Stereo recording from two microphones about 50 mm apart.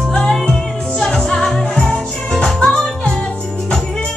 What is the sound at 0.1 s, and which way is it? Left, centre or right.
Music, centre.